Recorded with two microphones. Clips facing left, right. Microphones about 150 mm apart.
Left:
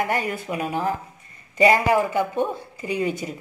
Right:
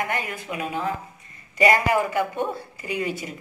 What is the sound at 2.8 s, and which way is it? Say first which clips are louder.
Speech: left 4 dB; 35° left (ahead or behind).